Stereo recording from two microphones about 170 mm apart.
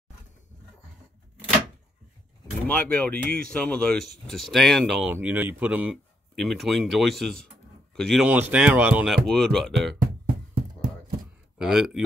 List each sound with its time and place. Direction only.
2.7 s speech: 10° left (ahead or behind)
5.1 s speech: 10° right (ahead or behind)
10.2 s a sound: 65° right (ahead or behind)
11.5 s speech: 5° right (ahead or behind)